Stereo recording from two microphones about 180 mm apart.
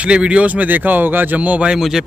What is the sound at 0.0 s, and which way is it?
Speech, 5° right (ahead or behind).